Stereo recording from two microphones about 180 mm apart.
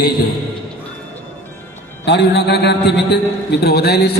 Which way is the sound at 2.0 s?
70° left (ahead or behind).